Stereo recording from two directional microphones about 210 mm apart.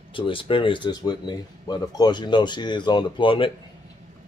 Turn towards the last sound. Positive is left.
turn(degrees=25)  # may be behind; listen again after turning